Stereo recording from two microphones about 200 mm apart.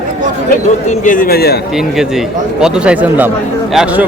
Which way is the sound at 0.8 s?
40° left (ahead or behind).